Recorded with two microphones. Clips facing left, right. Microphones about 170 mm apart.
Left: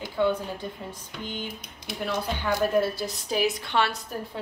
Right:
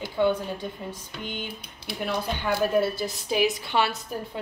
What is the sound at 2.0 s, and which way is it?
Speech, 5° right (ahead or behind).